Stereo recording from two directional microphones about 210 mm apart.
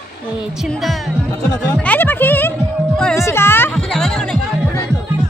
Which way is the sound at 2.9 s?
5° left (ahead or behind).